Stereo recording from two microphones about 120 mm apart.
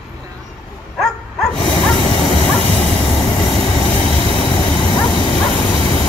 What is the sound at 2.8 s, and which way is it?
Vehicle, 5° left (ahead or behind).